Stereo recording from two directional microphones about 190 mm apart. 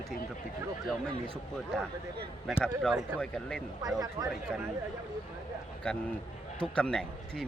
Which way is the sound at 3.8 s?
20° right (ahead or behind).